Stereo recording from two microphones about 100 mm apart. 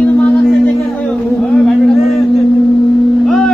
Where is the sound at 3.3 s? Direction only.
5° left (ahead or behind).